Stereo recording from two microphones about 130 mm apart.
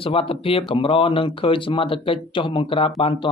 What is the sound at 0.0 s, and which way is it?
Speech, 45° left (ahead or behind).